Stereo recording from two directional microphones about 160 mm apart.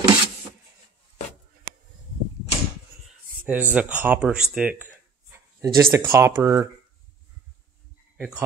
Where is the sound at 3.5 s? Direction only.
10° right (ahead or behind).